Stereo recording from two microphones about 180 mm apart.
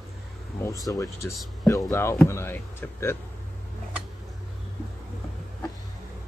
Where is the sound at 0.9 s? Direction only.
15° left (ahead or behind).